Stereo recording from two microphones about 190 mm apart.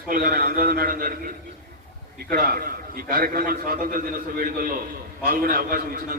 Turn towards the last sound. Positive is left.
turn(degrees=-50)  # may be behind; listen again after turning